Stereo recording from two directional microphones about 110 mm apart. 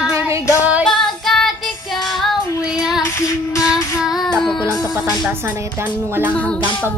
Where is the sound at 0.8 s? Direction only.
5° left (ahead or behind).